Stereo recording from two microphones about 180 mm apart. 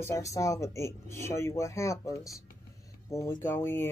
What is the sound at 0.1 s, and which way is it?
Speech, 20° left (ahead or behind).